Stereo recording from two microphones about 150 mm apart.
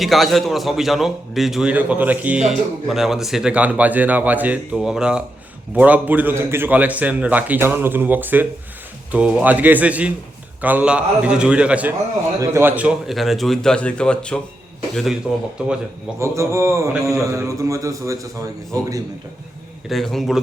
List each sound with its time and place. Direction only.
0.0 s a man's voice: centre (ahead or behind)
16.2 s a man's voice: 20° right (ahead or behind)
19.9 s a man's voice: centre (ahead or behind)